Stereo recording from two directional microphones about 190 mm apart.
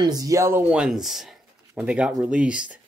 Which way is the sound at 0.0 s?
20° right (ahead or behind).